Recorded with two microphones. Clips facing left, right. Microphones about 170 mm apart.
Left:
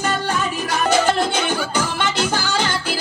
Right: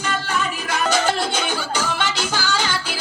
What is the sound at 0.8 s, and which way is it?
Music, 55° left (ahead or behind).